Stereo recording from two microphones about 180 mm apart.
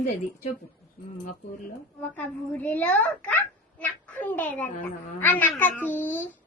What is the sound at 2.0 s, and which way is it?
A child's voice, 10° left (ahead or behind).